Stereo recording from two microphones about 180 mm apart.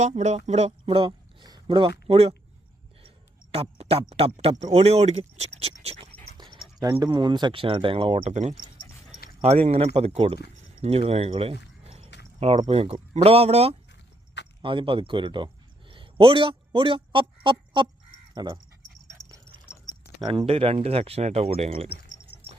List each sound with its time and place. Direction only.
0.0 s speech: 40° right (ahead or behind)
3.5 s speech: 35° right (ahead or behind)
6.3 s dog: 25° right (ahead or behind)
6.7 s a man's voice: 20° right (ahead or behind)
20.2 s speech: 30° right (ahead or behind)